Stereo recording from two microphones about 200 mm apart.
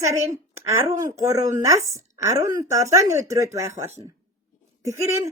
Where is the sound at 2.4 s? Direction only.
15° right (ahead or behind).